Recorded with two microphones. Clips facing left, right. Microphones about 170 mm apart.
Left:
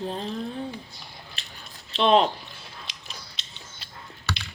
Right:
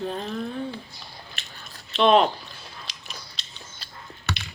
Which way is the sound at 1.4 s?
30° left (ahead or behind).